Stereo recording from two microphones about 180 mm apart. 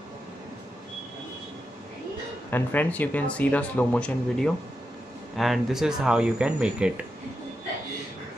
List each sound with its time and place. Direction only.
2.5 s speech: 10° left (ahead or behind)